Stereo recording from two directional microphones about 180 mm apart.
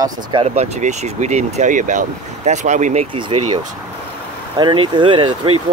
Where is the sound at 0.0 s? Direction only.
30° right (ahead or behind).